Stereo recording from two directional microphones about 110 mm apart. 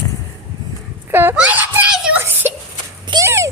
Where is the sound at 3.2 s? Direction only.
25° right (ahead or behind).